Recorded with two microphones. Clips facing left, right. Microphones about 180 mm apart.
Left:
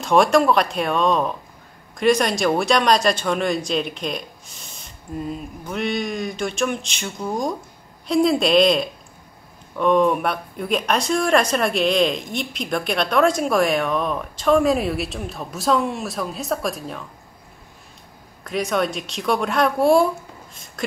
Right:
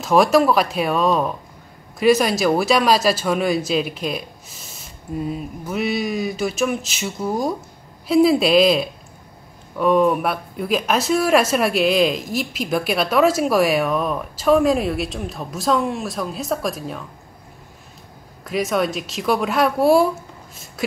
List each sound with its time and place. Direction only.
0.0 s speech: centre (ahead or behind)
18.4 s speech: centre (ahead or behind)